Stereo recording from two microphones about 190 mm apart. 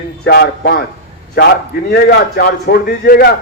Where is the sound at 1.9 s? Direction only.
60° left (ahead or behind).